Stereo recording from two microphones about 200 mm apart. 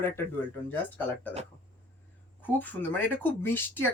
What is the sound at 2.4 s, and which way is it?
Speech, 10° left (ahead or behind).